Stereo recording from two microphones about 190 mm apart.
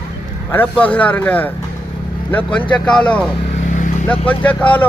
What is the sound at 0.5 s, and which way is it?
A man's voice, 10° left (ahead or behind).